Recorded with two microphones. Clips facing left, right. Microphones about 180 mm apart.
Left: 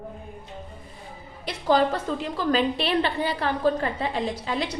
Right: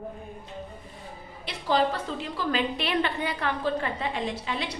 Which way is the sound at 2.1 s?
50° left (ahead or behind).